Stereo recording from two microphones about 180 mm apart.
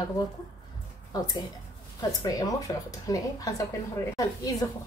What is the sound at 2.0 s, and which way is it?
Speech, 20° left (ahead or behind).